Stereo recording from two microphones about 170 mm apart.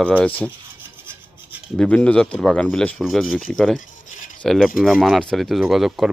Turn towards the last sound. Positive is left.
turn(degrees=0)  # may be behind; listen again after turning